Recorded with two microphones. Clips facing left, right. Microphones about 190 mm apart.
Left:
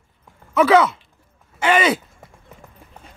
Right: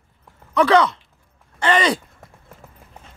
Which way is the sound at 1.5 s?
5° left (ahead or behind).